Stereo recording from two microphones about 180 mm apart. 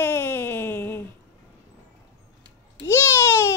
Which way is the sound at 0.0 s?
10° left (ahead or behind).